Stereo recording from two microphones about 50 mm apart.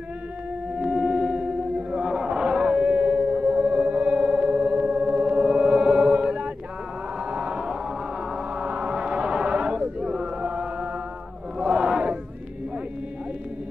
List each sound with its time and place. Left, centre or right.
0.7 s a sound: centre
4.3 s music: centre
5.4 s music: centre
7.2 s a sound: right
10.4 s chant: centre
11.6 s battle cry: centre